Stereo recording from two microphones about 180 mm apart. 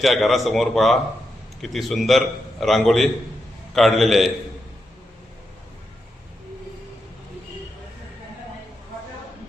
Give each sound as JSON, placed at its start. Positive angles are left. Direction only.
{"t": 0.0, "sound": "a man's voice", "side_deg": 0}